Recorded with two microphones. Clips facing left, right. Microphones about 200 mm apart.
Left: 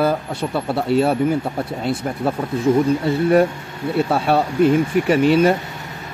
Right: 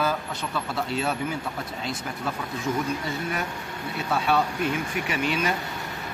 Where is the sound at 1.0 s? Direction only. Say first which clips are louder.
Left 11 dB; 55° left (ahead or behind).